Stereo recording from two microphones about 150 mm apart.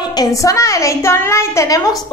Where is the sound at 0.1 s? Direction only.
25° left (ahead or behind).